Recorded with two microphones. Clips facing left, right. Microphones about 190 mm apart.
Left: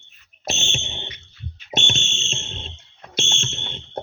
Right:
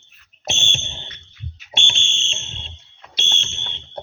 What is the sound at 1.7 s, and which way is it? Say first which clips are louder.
Fire alarm: left 7 dB; 40° left (ahead or behind).